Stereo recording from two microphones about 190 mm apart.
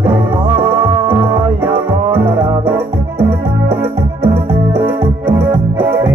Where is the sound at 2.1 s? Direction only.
10° right (ahead or behind).